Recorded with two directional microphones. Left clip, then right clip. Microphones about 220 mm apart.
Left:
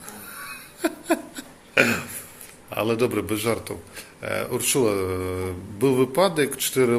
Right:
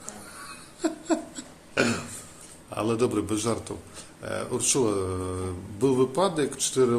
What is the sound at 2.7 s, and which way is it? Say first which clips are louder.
A man's voice: left 3 dB; 5° right (ahead or behind).